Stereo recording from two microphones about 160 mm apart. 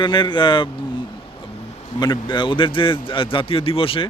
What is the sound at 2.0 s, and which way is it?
Speech, 25° left (ahead or behind).